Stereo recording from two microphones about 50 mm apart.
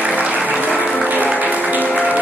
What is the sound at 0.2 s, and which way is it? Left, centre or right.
Music, right.